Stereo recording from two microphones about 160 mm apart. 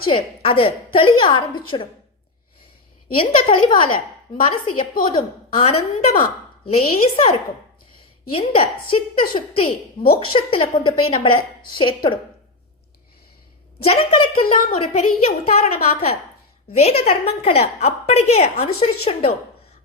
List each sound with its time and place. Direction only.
0.1 s a woman's voice: 35° left (ahead or behind)
3.2 s a woman's voice: 30° left (ahead or behind)
8.3 s a woman's voice: 35° left (ahead or behind)
13.8 s a woman's voice: 35° left (ahead or behind)